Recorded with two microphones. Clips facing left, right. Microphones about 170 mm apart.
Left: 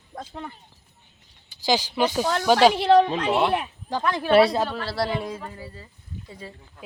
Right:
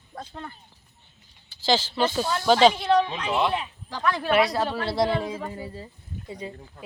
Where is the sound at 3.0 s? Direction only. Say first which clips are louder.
Left 4 dB; 45° left (ahead or behind).